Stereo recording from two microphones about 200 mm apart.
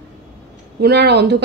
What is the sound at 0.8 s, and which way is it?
Speech, 55° right (ahead or behind).